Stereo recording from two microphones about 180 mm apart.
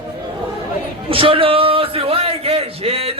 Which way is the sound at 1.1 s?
30° right (ahead or behind).